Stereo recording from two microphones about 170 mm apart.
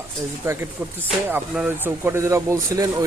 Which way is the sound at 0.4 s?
15° right (ahead or behind).